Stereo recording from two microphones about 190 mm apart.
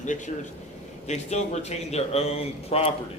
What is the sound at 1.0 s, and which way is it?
Speech, 35° left (ahead or behind).